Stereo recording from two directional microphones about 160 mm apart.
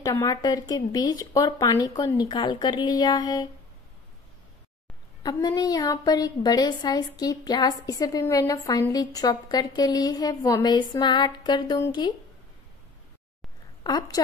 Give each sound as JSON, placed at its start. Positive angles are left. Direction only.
{"t": 0.0, "sound": "a woman's voice", "side_deg": 20}
{"t": 5.2, "sound": "a woman's voice", "side_deg": 25}
{"t": 13.8, "sound": "a woman's voice", "side_deg": 25}